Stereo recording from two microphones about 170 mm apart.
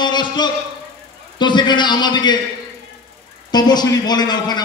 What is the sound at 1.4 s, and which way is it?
A man's voice, 25° left (ahead or behind).